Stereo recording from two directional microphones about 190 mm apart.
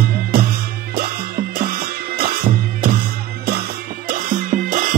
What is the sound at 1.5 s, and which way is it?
Music, 50° right (ahead or behind).